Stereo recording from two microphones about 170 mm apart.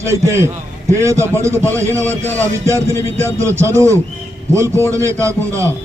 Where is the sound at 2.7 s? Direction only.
15° right (ahead or behind).